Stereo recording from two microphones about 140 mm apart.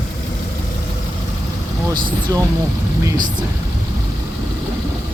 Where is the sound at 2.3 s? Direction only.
25° right (ahead or behind).